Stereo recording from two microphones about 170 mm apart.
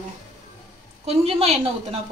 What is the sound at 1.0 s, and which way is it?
Speech, 35° right (ahead or behind).